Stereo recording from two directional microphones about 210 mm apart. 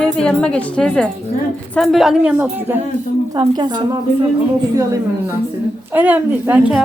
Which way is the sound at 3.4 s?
20° right (ahead or behind).